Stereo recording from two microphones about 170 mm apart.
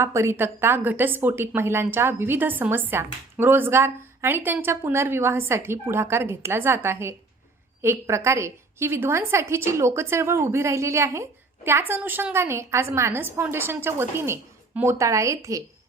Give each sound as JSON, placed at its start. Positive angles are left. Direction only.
{"t": 0.0, "sound": "a woman's voice", "side_deg": -15}